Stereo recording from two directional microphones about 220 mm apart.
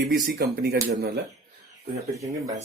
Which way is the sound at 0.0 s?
45° right (ahead or behind).